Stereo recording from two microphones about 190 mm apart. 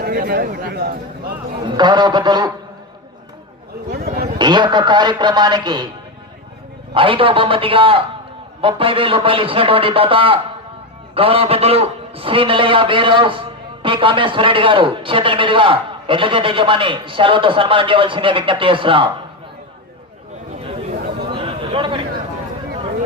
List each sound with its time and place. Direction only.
0.0 s speech: 55° right (ahead or behind)
1.6 s a man's voice: 25° right (ahead or behind)
3.9 s a sound: 55° right (ahead or behind)
4.4 s a man's voice: 25° right (ahead or behind)
6.9 s a man's voice: 25° right (ahead or behind)
21.2 s a sound: 25° right (ahead or behind)